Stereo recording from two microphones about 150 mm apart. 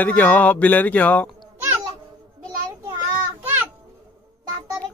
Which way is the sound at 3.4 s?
10° right (ahead or behind).